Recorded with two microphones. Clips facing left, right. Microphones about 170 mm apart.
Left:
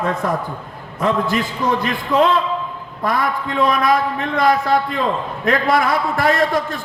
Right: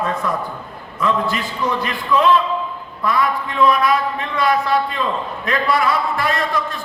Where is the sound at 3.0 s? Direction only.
50° left (ahead or behind).